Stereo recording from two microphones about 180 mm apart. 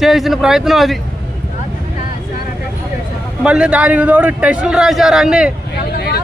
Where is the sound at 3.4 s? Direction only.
5° right (ahead or behind).